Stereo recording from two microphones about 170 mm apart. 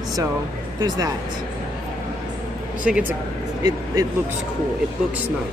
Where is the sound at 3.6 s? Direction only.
20° right (ahead or behind).